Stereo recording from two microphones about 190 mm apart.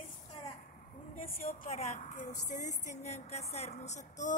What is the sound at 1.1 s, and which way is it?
A woman's voice, 45° left (ahead or behind).